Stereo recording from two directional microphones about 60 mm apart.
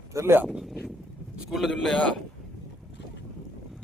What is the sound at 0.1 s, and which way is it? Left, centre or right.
Speech, right.